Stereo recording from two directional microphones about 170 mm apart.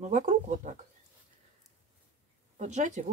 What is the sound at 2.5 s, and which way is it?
Speech, 45° right (ahead or behind).